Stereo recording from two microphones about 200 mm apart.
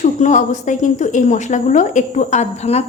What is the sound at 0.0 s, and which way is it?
A woman's voice, 40° left (ahead or behind).